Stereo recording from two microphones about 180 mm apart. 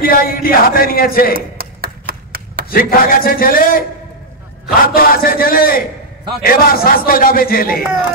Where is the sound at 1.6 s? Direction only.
55° right (ahead or behind).